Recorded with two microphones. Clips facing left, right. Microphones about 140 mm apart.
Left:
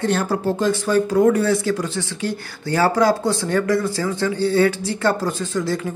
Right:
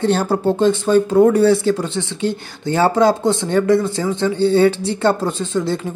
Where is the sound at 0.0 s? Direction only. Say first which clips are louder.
Right 4 dB; 30° right (ahead or behind).